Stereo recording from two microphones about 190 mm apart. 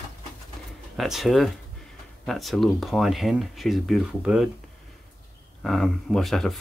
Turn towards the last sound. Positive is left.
turn(degrees=0)  # may be behind; listen again after turning